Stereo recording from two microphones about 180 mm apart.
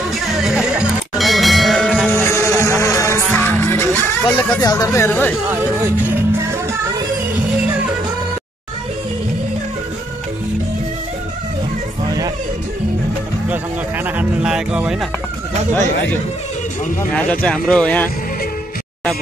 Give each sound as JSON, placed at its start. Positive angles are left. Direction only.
{"t": 0.1, "sound": "music", "side_deg": 0}
{"t": 4.6, "sound": "speech", "side_deg": 20}
{"t": 13.5, "sound": "music", "side_deg": -10}
{"t": 17.1, "sound": "speech", "side_deg": 10}